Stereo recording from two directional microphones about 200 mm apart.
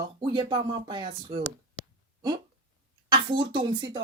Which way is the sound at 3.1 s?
25° right (ahead or behind).